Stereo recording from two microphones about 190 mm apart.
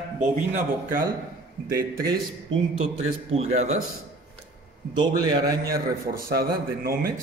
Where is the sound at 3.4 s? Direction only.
35° right (ahead or behind).